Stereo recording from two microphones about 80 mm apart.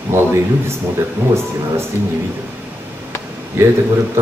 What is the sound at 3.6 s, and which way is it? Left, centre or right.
Speech, right.